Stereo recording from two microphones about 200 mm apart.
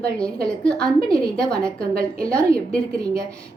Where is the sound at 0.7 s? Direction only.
5° left (ahead or behind).